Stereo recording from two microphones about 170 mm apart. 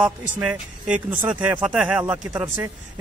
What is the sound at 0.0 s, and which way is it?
A man's voice, 5° right (ahead or behind).